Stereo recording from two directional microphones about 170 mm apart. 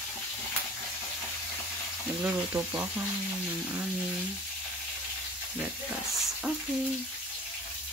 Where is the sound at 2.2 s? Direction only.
10° right (ahead or behind).